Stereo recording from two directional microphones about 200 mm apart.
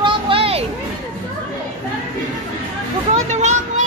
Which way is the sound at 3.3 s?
35° right (ahead or behind).